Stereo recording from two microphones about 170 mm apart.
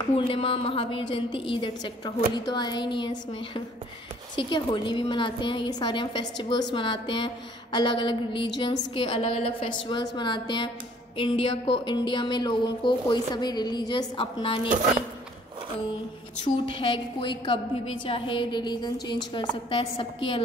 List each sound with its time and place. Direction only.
0.1 s a woman's voice: 30° left (ahead or behind)
16.5 s a woman's voice: 30° left (ahead or behind)